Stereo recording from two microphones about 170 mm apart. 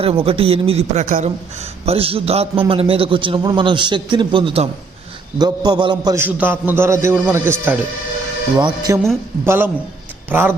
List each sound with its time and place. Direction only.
0.0 s a man's voice: 35° right (ahead or behind)
6.1 s a man's voice: 10° right (ahead or behind)
8.5 s a man's voice: 25° right (ahead or behind)
9.4 s a man's voice: 15° right (ahead or behind)